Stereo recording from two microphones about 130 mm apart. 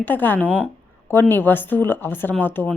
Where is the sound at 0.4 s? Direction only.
10° right (ahead or behind).